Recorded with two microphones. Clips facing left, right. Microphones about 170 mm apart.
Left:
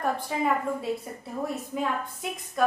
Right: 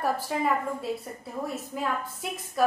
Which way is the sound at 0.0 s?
Centre (ahead or behind).